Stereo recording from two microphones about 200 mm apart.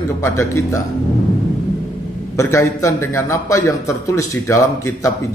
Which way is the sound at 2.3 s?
15° left (ahead or behind).